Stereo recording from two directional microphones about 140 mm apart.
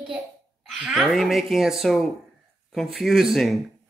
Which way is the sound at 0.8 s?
Centre (ahead or behind).